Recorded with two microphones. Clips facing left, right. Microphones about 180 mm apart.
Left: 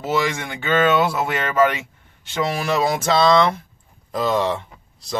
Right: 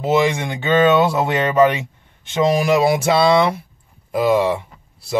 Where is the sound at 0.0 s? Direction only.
20° right (ahead or behind).